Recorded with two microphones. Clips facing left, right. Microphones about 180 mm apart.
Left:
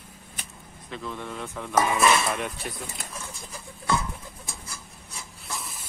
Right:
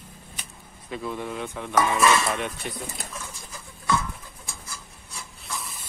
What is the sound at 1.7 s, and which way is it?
Speech, 15° left (ahead or behind).